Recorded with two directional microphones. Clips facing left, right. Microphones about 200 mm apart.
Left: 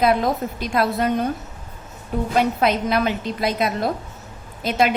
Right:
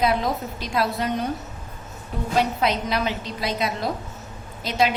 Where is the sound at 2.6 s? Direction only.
55° left (ahead or behind).